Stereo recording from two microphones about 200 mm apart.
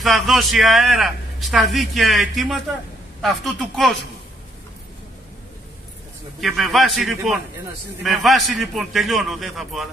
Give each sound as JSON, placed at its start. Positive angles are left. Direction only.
{"t": 0.0, "sound": "a man's voice", "side_deg": 0}
{"t": 6.4, "sound": "a man's voice", "side_deg": 0}